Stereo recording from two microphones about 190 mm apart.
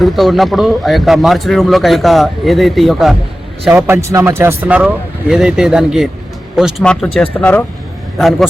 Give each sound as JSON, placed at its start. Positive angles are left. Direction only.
{"t": 0.0, "sound": "a man's voice", "side_deg": 0}
{"t": 3.7, "sound": "a man's voice", "side_deg": -10}